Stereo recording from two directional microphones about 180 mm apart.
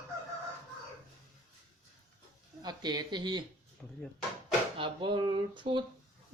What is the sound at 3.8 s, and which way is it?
Speech, 5° left (ahead or behind).